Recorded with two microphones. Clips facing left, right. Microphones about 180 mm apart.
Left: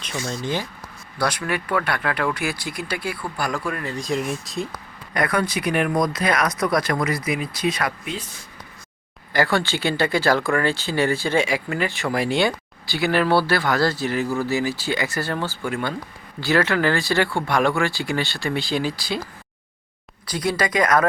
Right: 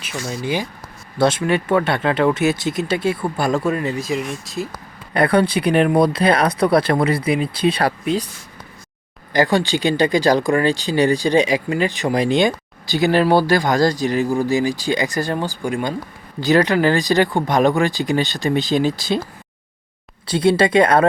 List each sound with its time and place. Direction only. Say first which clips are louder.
0.3 s speech: right 4 dB; 10° right (ahead or behind)
1.2 s speech: right 7 dB; 25° right (ahead or behind)
3.9 s speech: right 2 dB; 5° right (ahead or behind)
5.1 s speech: right 7 dB; 30° right (ahead or behind)
9.3 s speech: right 4 dB; 20° right (ahead or behind)
20.2 s speech: right 8 dB; 25° right (ahead or behind)